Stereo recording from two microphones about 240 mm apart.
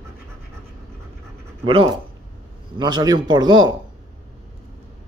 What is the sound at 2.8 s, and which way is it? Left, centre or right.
Speech, centre.